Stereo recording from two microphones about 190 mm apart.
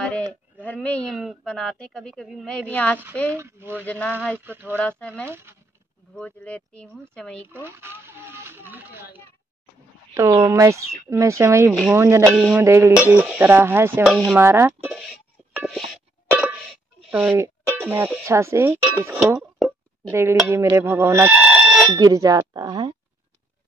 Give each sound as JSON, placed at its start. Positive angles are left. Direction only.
{"t": 0.0, "sound": "speech", "side_deg": 5}
{"t": 3.3, "sound": "speech", "side_deg": -15}
{"t": 3.8, "sound": "speech", "side_deg": 5}
{"t": 4.5, "sound": "speech", "side_deg": -10}
{"t": 4.7, "sound": "speech", "side_deg": 5}
{"t": 5.2, "sound": "speech", "side_deg": -10}
{"t": 6.1, "sound": "speech", "side_deg": 5}
{"t": 7.5, "sound": "speech", "side_deg": -10}
{"t": 10.1, "sound": "speech", "side_deg": -20}
{"t": 14.1, "sound": "speech", "side_deg": 0}
{"t": 14.4, "sound": "speech", "side_deg": -15}
{"t": 14.9, "sound": "music", "side_deg": 0}
{"t": 16.3, "sound": "cowbell", "side_deg": -10}
{"t": 17.1, "sound": "speech", "side_deg": -5}